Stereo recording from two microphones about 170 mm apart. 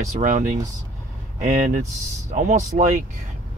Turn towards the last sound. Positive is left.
turn(degrees=-50)  # may be behind; listen again after turning